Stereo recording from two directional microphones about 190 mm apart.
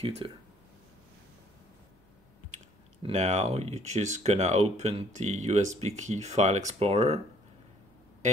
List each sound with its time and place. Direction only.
0.2 s speech: 30° right (ahead or behind)
2.5 s speech: 35° right (ahead or behind)